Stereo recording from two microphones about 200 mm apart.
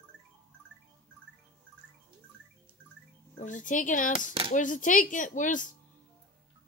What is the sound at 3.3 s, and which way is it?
Speech, 40° left (ahead or behind).